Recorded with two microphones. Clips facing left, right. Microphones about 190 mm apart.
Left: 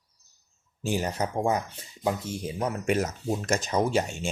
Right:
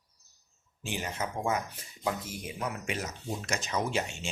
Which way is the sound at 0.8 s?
40° left (ahead or behind).